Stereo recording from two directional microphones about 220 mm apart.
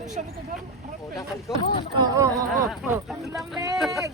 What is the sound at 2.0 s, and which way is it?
Speech, 15° right (ahead or behind).